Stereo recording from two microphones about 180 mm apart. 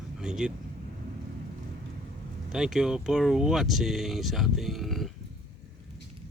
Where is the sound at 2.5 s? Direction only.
Centre (ahead or behind).